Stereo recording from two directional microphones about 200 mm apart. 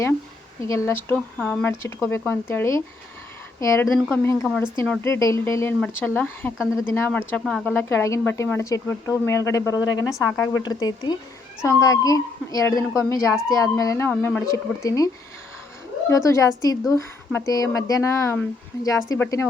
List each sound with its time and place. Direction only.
0.6 s speech: 15° left (ahead or behind)